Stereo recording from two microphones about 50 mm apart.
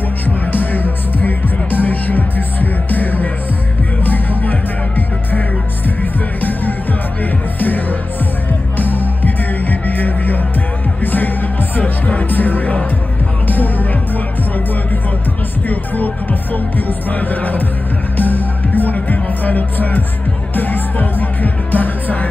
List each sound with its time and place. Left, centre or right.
0.5 s music: left
6.4 s music: left
11.8 s music: left
12.3 s music: left
16.7 s music: left